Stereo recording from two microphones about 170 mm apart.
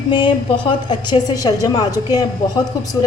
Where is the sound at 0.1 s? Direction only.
30° left (ahead or behind).